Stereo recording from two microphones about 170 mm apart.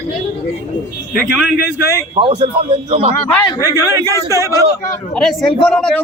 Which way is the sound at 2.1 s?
30° right (ahead or behind).